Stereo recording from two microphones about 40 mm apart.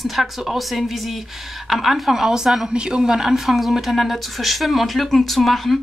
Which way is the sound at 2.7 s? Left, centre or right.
Right.